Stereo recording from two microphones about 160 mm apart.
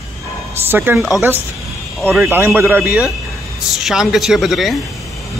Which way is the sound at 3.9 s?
Centre (ahead or behind).